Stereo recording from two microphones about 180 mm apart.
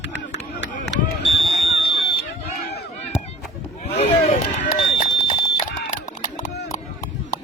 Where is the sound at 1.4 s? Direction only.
35° left (ahead or behind).